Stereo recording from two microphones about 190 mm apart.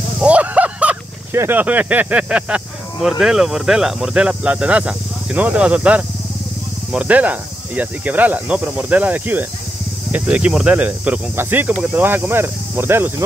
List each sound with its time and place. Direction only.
0.2 s speech: 5° right (ahead or behind)
6.9 s cricket: 5° right (ahead or behind)